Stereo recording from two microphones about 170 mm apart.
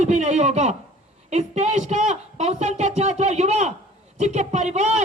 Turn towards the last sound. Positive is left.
turn(degrees=-40)  # may be behind; listen again after turning